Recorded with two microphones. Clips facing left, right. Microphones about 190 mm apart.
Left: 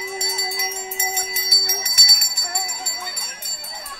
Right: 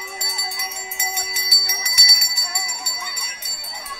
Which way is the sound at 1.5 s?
50° left (ahead or behind).